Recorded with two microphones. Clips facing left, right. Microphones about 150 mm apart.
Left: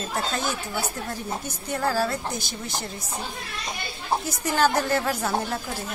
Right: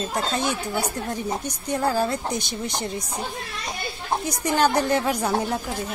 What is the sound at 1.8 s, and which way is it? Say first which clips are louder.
Speech: right 1 dB; 20° right (ahead or behind).